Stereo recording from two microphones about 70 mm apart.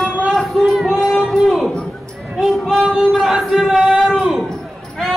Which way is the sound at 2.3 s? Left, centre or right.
Centre.